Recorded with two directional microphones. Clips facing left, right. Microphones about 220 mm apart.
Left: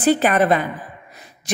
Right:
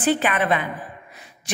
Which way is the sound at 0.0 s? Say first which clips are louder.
Left 5 dB; 40° left (ahead or behind).